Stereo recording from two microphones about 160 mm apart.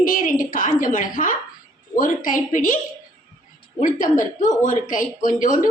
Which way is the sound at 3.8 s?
55° left (ahead or behind).